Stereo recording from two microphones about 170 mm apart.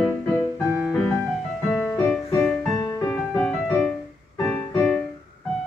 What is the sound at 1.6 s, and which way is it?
Music, 5° left (ahead or behind).